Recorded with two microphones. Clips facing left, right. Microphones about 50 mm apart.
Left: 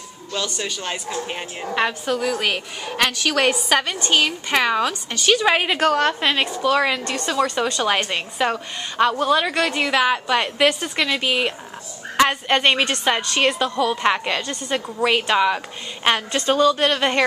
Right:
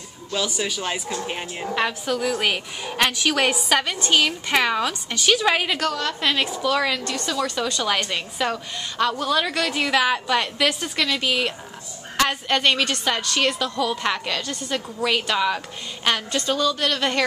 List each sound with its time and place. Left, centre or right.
0.3 s a woman's voice: centre
5.4 s a woman's voice: centre
5.9 s a woman's voice: left
6.2 s a woman's voice: centre
7.1 s a woman's voice: left